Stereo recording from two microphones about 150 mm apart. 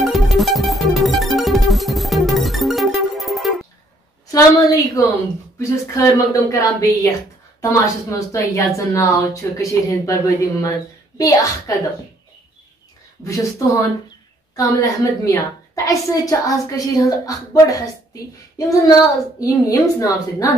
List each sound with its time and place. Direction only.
0.0 s music: centre (ahead or behind)
4.3 s a sound: 25° left (ahead or behind)
5.6 s speech: 20° left (ahead or behind)
13.2 s speech: 20° left (ahead or behind)
14.5 s speech: 20° left (ahead or behind)